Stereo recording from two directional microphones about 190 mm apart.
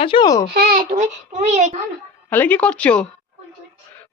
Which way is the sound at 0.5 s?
55° right (ahead or behind).